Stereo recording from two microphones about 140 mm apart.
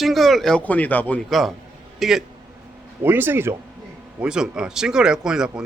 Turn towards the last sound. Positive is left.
turn(degrees=-5)  # may be behind; listen again after turning